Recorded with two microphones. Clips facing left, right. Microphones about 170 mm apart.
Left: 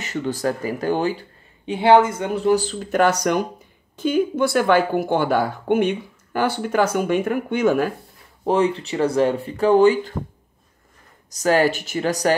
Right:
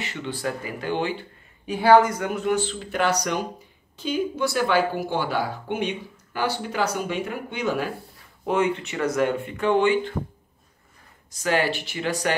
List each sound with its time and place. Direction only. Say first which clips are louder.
0.0 s speech: left 6 dB; 40° left (ahead or behind)
1.7 s speech: left 2 dB; 25° left (ahead or behind); by 7.9 s 50° left (ahead or behind)
8.5 s speech: left 4 dB; 35° left (ahead or behind)
11.2 s speech: left 6 dB; 40° left (ahead or behind)